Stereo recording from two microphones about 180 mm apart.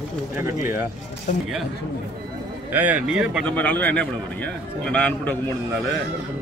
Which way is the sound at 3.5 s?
10° left (ahead or behind).